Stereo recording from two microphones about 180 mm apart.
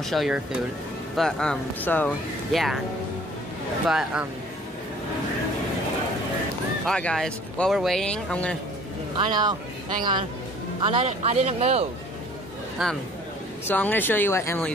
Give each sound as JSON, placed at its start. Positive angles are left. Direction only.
{"t": 0.0, "sound": "speech", "side_deg": 0}
{"t": 3.8, "sound": "speech", "side_deg": -5}
{"t": 6.9, "sound": "speech", "side_deg": 5}
{"t": 9.1, "sound": "speech", "side_deg": -25}
{"t": 10.8, "sound": "speech", "side_deg": -30}
{"t": 12.8, "sound": "speech", "side_deg": 0}
{"t": 13.7, "sound": "speech", "side_deg": 10}